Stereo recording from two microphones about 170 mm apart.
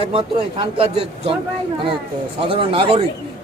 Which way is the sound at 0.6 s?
35° right (ahead or behind).